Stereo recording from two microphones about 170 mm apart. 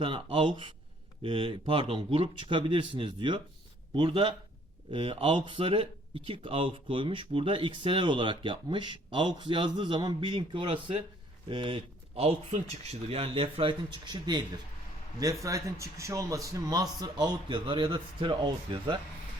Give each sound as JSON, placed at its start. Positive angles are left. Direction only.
{"t": 0.0, "sound": "speech", "side_deg": -30}
{"t": 15.4, "sound": "speech", "side_deg": -20}